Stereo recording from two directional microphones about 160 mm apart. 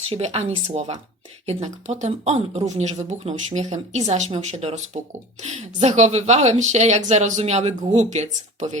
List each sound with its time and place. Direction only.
0.1 s speech: 40° right (ahead or behind)